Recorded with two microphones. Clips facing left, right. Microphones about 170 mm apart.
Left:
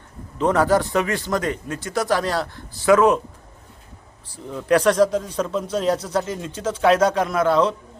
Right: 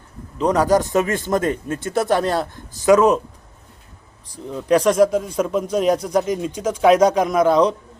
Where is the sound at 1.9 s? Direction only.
25° right (ahead or behind).